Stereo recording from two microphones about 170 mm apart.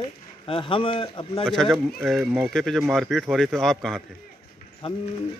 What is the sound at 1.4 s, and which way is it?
Speech, centre (ahead or behind).